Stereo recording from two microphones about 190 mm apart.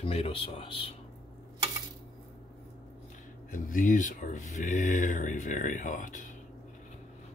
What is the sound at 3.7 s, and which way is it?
Speech, 45° left (ahead or behind).